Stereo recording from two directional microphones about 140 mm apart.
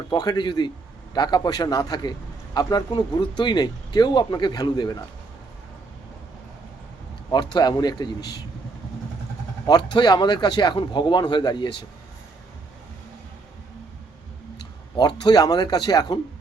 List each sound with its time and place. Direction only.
0.1 s a man's voice: 30° left (ahead or behind)
7.3 s a man's voice: 30° left (ahead or behind)
9.6 s speech: 30° left (ahead or behind)
14.9 s speech: 30° left (ahead or behind)